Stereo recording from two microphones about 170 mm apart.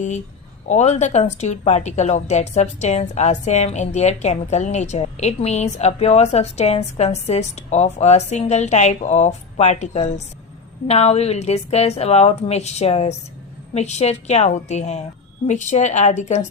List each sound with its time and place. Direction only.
0.7 s a woman's voice: 40° left (ahead or behind)